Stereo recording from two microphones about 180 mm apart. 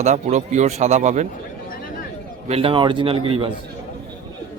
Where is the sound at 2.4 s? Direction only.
35° right (ahead or behind).